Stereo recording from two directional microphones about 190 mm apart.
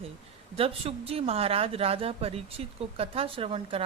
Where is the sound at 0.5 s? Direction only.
30° right (ahead or behind).